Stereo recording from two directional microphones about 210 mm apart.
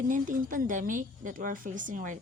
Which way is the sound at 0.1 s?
40° right (ahead or behind).